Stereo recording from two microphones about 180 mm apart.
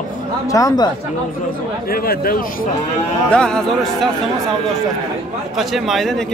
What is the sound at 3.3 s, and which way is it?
Speech, 5° left (ahead or behind).